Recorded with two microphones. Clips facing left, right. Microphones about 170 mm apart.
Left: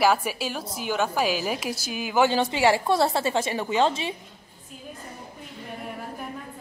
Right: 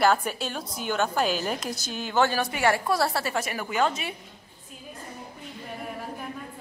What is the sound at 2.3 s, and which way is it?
A woman's voice, 20° left (ahead or behind).